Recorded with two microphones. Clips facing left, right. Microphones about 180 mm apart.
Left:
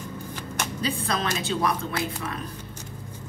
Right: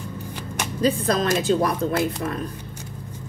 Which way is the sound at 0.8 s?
40° right (ahead or behind).